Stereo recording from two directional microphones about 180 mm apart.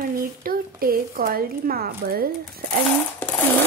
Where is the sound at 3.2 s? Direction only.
10° left (ahead or behind).